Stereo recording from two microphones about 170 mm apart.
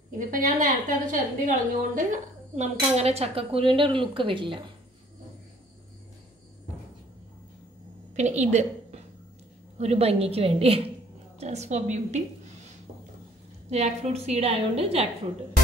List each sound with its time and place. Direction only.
0.2 s a woman's voice: 50° right (ahead or behind); by 4.6 s 30° right (ahead or behind)
8.2 s a woman's voice: 40° right (ahead or behind)
13.7 s a woman's voice: 40° right (ahead or behind)